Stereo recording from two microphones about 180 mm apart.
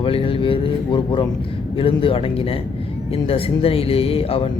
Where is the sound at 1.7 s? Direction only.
30° left (ahead or behind).